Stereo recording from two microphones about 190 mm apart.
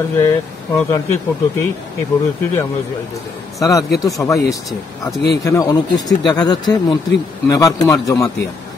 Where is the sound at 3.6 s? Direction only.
15° left (ahead or behind).